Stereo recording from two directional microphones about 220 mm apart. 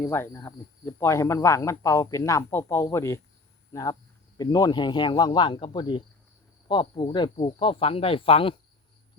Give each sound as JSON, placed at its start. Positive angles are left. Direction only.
{"t": 0.0, "sound": "speech", "side_deg": 10}